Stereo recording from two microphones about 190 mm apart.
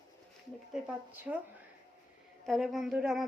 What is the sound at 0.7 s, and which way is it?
Speech, 10° right (ahead or behind).